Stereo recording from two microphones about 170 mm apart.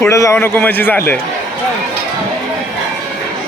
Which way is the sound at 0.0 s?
15° left (ahead or behind).